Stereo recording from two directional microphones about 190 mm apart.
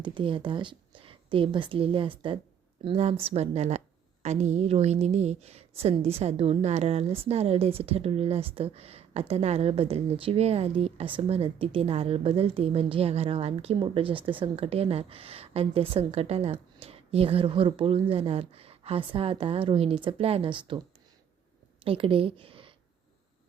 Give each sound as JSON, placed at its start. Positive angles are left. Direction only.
{"t": 0.0, "sound": "a woman's voice", "side_deg": -25}
{"t": 21.8, "sound": "a woman's voice", "side_deg": -30}